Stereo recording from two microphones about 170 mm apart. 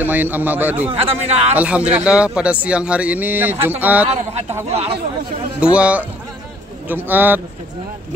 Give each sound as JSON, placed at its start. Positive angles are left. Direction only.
{"t": 0.0, "sound": "speech", "side_deg": -10}
{"t": 0.8, "sound": "speech", "side_deg": -35}
{"t": 1.5, "sound": "speech", "side_deg": -10}
{"t": 4.1, "sound": "speech", "side_deg": -40}
{"t": 5.6, "sound": "speech", "side_deg": -5}